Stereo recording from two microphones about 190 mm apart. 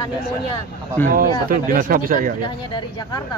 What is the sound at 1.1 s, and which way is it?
Speech, 50° right (ahead or behind).